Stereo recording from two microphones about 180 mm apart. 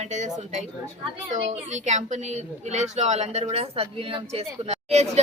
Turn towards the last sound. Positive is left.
turn(degrees=-35)  # may be behind; listen again after turning